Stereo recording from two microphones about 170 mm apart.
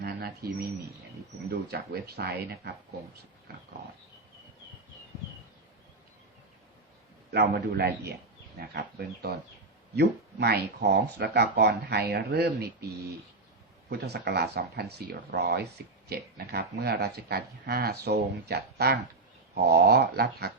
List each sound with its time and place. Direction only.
0.0 s speech: 70° right (ahead or behind)
7.3 s speech: 70° right (ahead or behind)